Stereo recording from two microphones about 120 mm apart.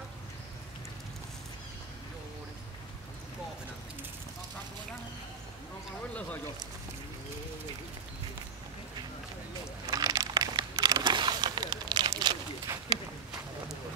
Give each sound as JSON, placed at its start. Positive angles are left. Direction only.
{"t": 9.8, "sound": "crumpling", "side_deg": -30}